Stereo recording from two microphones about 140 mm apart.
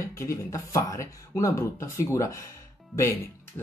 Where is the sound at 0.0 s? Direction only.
20° left (ahead or behind).